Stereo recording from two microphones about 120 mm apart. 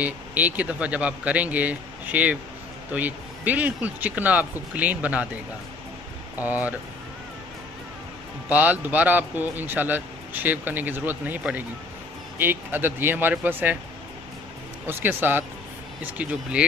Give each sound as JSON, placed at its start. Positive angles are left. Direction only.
{"t": 0.0, "sound": "speech", "side_deg": -10}
{"t": 6.4, "sound": "speech", "side_deg": -15}
{"t": 8.5, "sound": "speech", "side_deg": -10}
{"t": 14.9, "sound": "speech", "side_deg": -15}